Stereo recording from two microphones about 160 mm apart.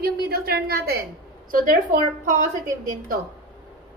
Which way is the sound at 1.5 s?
60° right (ahead or behind).